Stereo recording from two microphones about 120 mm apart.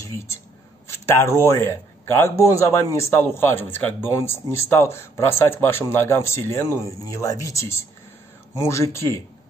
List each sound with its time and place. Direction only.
0.8 s speech: 20° left (ahead or behind)